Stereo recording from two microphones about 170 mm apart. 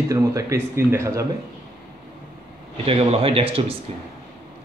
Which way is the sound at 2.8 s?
35° right (ahead or behind).